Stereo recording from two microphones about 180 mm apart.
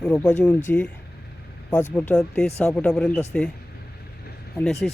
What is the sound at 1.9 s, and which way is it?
Speech, 10° left (ahead or behind).